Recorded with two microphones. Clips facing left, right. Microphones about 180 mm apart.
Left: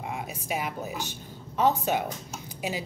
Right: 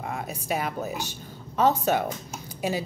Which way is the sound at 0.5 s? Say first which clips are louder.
Right 3 dB; 15° left (ahead or behind).